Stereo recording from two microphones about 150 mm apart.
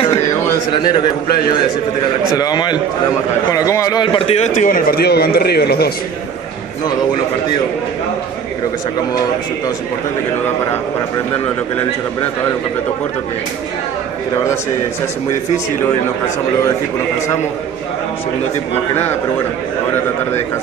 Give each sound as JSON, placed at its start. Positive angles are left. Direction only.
{"t": 2.3, "sound": "a man's voice", "side_deg": 25}